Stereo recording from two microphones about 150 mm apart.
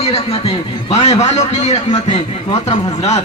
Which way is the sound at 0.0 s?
45° left (ahead or behind).